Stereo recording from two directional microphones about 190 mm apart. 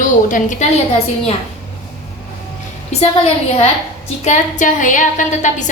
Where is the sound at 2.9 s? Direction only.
35° left (ahead or behind).